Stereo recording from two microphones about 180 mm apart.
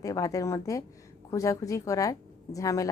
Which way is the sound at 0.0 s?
20° left (ahead or behind).